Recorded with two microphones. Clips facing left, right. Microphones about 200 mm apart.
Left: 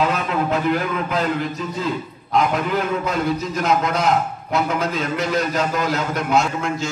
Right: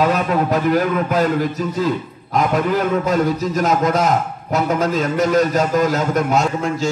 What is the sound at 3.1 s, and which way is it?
A man's voice, 45° right (ahead or behind).